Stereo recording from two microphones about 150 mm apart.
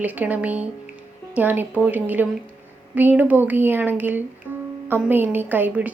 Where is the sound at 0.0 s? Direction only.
10° right (ahead or behind).